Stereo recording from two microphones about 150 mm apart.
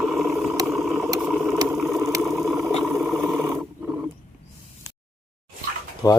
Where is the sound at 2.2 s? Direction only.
Centre (ahead or behind).